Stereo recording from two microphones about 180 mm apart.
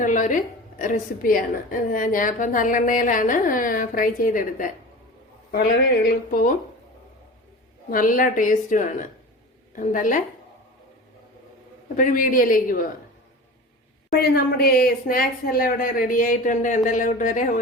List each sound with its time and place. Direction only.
0.0 s a woman's voice: 45° left (ahead or behind)
6.1 s speech: 50° left (ahead or behind)
7.9 s speech: 50° left (ahead or behind)
11.9 s speech: 45° left (ahead or behind)
14.2 s speech: 60° left (ahead or behind)